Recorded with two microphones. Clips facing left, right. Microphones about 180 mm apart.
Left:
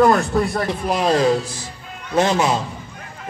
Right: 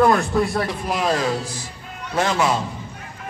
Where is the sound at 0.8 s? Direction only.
25° left (ahead or behind).